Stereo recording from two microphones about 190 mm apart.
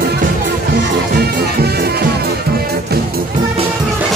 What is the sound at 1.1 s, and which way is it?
Music, 55° right (ahead or behind).